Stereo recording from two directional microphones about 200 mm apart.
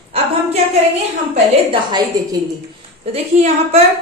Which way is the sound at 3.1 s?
30° right (ahead or behind).